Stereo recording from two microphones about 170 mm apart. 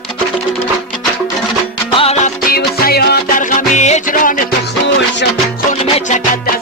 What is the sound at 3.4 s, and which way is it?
Music, 45° left (ahead or behind).